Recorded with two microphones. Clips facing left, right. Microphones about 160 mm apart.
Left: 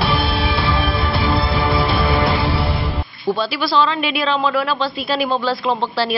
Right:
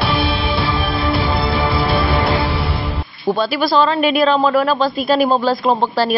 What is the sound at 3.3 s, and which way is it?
Speech, 50° right (ahead or behind).